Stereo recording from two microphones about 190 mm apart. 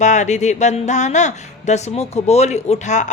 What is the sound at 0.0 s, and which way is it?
A woman's voice, 40° left (ahead or behind).